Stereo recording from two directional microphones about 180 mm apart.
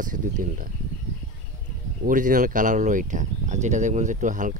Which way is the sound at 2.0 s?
50° right (ahead or behind).